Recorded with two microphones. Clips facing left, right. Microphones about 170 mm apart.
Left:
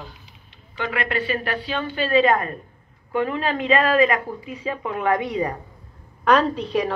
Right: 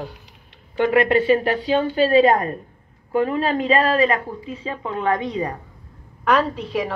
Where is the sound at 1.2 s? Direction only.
20° right (ahead or behind).